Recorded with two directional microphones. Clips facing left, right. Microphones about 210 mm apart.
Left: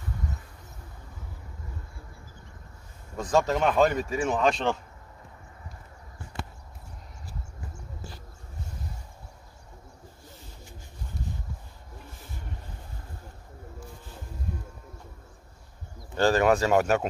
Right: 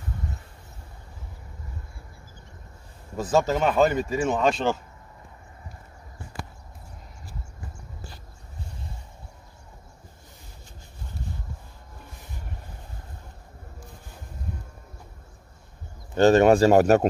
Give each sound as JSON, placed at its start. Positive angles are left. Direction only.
{"t": 3.2, "sound": "speech", "side_deg": -5}
{"t": 16.2, "sound": "speech", "side_deg": -25}